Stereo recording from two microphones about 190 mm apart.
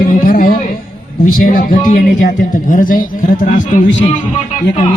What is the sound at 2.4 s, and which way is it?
Speech, 45° left (ahead or behind).